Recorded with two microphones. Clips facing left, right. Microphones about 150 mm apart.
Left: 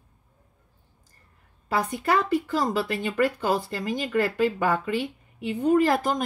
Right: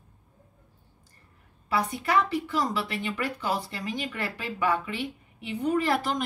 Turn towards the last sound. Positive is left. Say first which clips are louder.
# left 5 dB
turn(degrees=45)  # may be behind; listen again after turning